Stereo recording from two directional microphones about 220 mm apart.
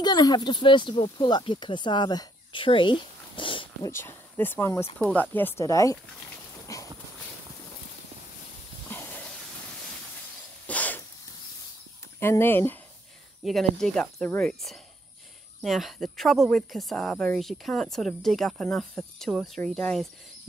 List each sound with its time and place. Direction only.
0.0 s speech: 20° left (ahead or behind)
3.9 s speech: 10° left (ahead or behind)
6.7 s a sound: 15° left (ahead or behind)
8.9 s hiss: 10° left (ahead or behind)
10.7 s a sound: 5° left (ahead or behind)
12.2 s speech: 10° left (ahead or behind)